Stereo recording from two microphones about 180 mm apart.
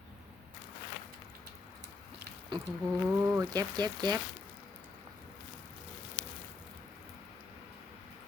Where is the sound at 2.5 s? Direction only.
25° right (ahead or behind).